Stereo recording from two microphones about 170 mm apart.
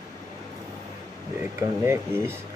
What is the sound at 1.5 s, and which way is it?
Speech, 15° right (ahead or behind).